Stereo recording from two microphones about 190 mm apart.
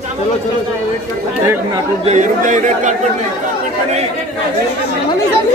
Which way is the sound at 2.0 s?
40° right (ahead or behind).